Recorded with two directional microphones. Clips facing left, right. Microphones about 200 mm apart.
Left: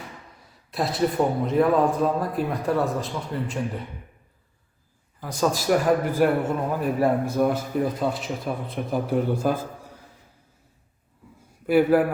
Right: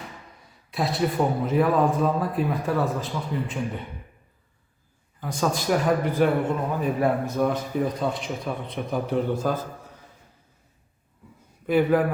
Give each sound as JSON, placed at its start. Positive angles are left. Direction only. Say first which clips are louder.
{"t": 0.7, "sound": "a man's voice", "louder": "left 1 dB", "side_deg": 0}
{"t": 5.2, "sound": "a man's voice", "louder": "left 2 dB", "side_deg": 0}
{"t": 11.6, "sound": "a man's voice", "louder": "left 2 dB", "side_deg": 5}